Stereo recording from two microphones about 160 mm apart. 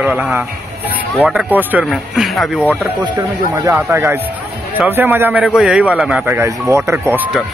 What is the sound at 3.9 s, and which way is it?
A man's voice, 15° right (ahead or behind).